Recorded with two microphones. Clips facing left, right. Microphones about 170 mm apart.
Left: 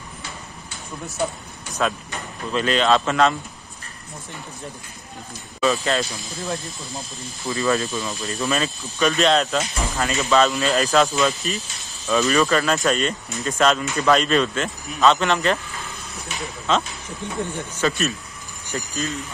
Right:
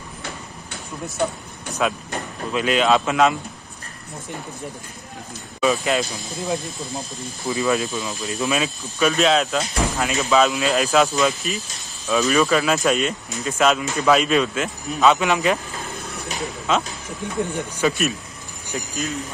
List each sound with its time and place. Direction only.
1.8 s speech: 10° right (ahead or behind)
5.6 s speech: 15° right (ahead or behind)
7.7 s speech: centre (ahead or behind)
16.7 s speech: 5° right (ahead or behind)